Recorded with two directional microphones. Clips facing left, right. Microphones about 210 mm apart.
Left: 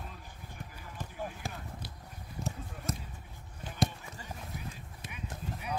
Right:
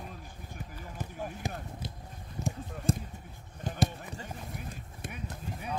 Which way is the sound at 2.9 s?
30° right (ahead or behind).